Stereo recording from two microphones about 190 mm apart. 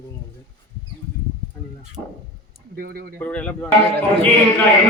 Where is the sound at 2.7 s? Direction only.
50° right (ahead or behind).